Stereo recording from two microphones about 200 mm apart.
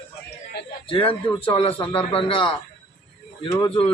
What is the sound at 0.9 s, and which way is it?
A man's voice, 25° left (ahead or behind).